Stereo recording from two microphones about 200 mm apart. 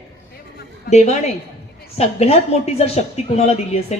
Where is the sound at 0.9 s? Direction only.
35° left (ahead or behind).